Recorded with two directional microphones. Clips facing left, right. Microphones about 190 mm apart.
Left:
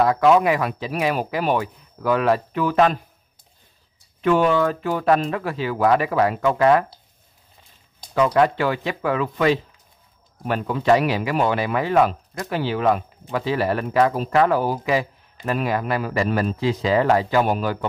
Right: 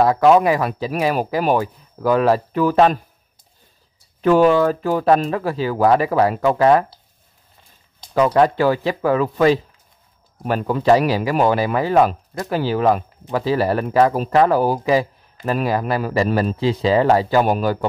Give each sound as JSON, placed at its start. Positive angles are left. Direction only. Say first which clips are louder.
{"t": 0.0, "sound": "speech", "louder": "right 3 dB", "side_deg": -35}
{"t": 4.2, "sound": "speech", "louder": "right 4 dB", "side_deg": -40}
{"t": 8.1, "sound": "speech", "louder": "right 3 dB", "side_deg": -35}